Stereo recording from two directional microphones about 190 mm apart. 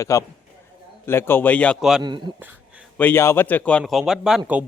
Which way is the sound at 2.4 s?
5° right (ahead or behind).